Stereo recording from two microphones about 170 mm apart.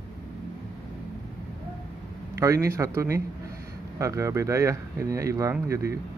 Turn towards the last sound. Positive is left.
turn(degrees=-15)  # may be behind; listen again after turning